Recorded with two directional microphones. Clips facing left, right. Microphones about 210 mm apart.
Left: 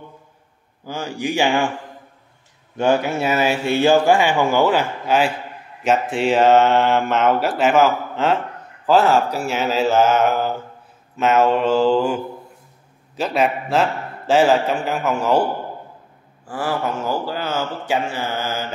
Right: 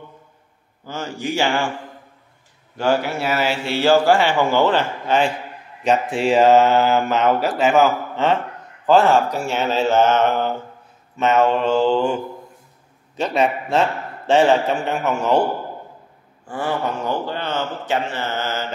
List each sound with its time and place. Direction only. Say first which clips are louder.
0.8 s speech: left 1 dB; 15° left (ahead or behind)
2.8 s speech: left 2 dB; 20° left (ahead or behind); by 15.4 s centre (ahead or behind)
16.4 s speech: even; 5° left (ahead or behind)